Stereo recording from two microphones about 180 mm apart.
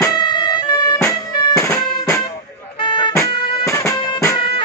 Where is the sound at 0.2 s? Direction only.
25° left (ahead or behind).